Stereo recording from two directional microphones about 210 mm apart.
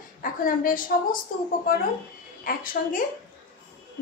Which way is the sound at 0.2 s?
40° left (ahead or behind).